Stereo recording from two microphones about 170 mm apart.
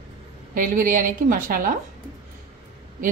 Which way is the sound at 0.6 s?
55° right (ahead or behind).